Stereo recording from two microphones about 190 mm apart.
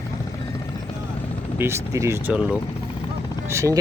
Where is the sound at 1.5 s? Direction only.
15° right (ahead or behind).